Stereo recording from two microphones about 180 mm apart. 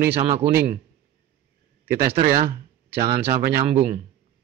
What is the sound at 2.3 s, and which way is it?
Speech, 55° right (ahead or behind).